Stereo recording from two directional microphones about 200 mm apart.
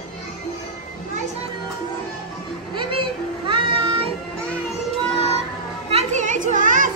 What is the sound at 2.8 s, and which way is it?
Music, 25° right (ahead or behind).